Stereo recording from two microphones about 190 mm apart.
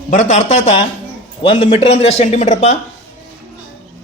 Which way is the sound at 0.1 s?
40° left (ahead or behind).